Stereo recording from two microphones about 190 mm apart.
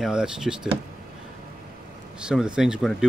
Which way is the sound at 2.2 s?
5° right (ahead or behind).